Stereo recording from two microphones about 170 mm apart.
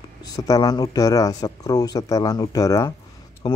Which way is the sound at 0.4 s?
20° left (ahead or behind).